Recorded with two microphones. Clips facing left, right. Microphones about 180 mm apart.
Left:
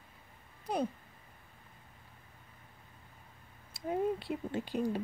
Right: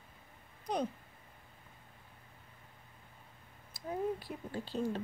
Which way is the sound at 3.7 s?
25° left (ahead or behind).